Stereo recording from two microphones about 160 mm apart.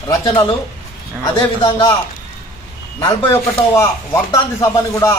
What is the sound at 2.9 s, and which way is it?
A man's voice, 20° left (ahead or behind).